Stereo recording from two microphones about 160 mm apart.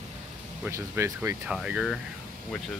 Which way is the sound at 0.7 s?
15° right (ahead or behind).